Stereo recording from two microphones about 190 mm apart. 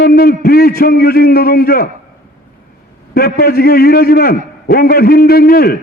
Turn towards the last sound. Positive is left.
turn(degrees=50)  # may be behind; listen again after turning